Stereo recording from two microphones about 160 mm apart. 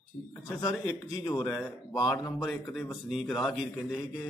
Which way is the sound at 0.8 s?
25° left (ahead or behind).